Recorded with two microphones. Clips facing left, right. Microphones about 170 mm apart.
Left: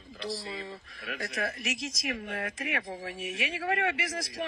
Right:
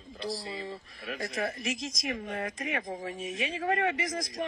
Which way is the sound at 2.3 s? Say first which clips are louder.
Right 1 dB; 35° right (ahead or behind).